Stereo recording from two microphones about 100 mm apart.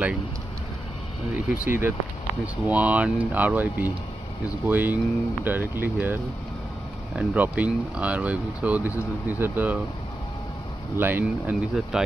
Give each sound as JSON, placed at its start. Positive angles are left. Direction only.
{"t": 1.6, "sound": "speech", "side_deg": -20}
{"t": 11.0, "sound": "speech", "side_deg": -20}
{"t": 11.9, "sound": "speech", "side_deg": -5}